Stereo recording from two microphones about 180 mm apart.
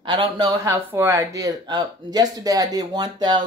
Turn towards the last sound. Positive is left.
turn(degrees=-25)  # may be behind; listen again after turning